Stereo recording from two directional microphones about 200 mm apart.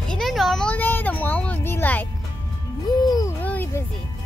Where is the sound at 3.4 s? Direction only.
10° left (ahead or behind).